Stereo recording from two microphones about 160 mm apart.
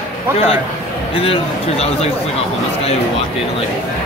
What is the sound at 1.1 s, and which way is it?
Speech, 35° left (ahead or behind).